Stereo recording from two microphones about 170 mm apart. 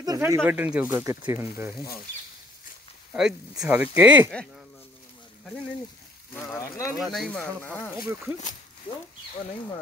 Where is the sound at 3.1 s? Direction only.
5° right (ahead or behind).